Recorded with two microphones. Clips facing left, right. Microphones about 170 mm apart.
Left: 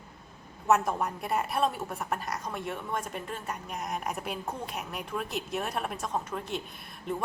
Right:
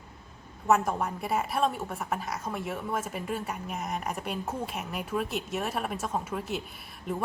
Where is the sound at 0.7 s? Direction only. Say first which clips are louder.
Even; centre (ahead or behind).